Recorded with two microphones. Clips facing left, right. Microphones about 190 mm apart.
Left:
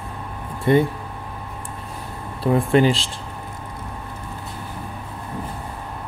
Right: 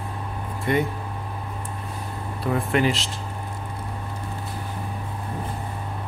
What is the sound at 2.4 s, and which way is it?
Speech, 30° left (ahead or behind).